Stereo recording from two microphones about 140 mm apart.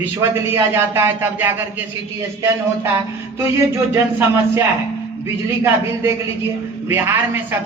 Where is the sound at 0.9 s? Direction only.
15° right (ahead or behind).